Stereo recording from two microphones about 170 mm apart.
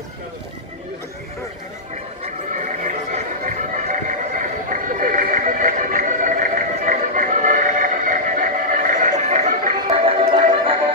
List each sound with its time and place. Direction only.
2.2 s music: 45° right (ahead or behind)
10.0 s music: 30° right (ahead or behind)